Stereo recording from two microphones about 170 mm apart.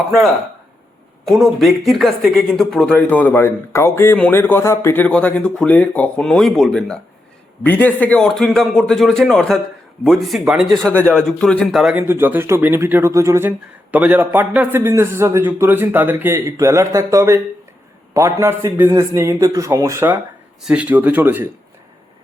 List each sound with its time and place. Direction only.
1.2 s speech: centre (ahead or behind)
12.0 s a man's voice: 10° right (ahead or behind)